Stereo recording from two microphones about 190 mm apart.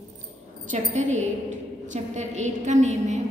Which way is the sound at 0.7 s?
40° right (ahead or behind).